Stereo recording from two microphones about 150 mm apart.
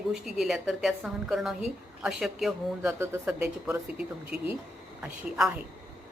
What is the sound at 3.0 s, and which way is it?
Speech, 15° right (ahead or behind).